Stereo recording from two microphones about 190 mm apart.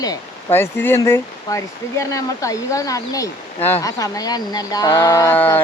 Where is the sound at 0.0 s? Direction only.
15° left (ahead or behind).